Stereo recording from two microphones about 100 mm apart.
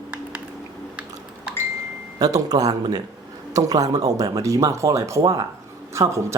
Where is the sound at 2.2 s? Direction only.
40° right (ahead or behind).